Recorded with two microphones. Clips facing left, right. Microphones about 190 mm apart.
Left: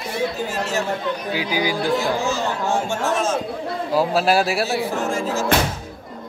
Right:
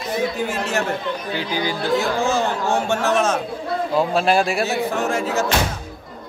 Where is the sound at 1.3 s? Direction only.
10° left (ahead or behind).